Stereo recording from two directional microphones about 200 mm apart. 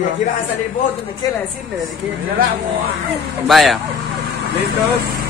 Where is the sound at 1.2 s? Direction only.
20° left (ahead or behind).